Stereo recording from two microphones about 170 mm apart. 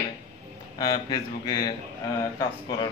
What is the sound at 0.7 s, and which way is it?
Speech, 25° left (ahead or behind).